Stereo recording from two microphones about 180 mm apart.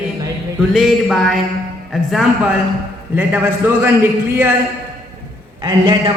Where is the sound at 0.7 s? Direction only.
Centre (ahead or behind).